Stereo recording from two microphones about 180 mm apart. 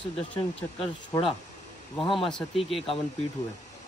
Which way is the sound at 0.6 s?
30° left (ahead or behind).